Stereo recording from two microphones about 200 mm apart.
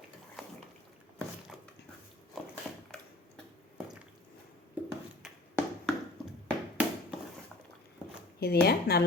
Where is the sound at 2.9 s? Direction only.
5° left (ahead or behind).